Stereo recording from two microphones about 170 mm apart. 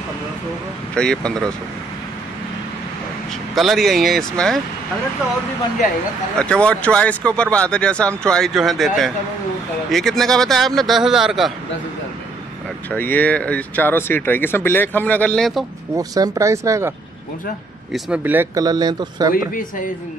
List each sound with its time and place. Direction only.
0.9 s speech: 5° left (ahead or behind)
3.5 s speech: centre (ahead or behind)
6.4 s speech: 5° left (ahead or behind)
12.9 s speech: 10° left (ahead or behind)
16.0 s speech: 20° right (ahead or behind)
17.9 s speech: 5° right (ahead or behind); by 19.3 s 25° right (ahead or behind)